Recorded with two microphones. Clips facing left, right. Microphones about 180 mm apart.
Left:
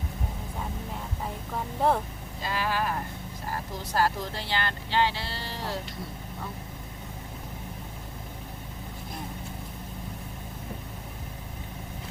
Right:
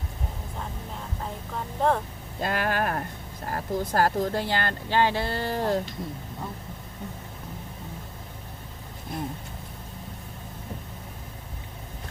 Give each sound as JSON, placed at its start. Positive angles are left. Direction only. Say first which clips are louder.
{"t": 1.8, "sound": "speech", "louder": "right 1 dB", "side_deg": 10}
{"t": 2.4, "sound": "speech", "louder": "right 3 dB", "side_deg": -55}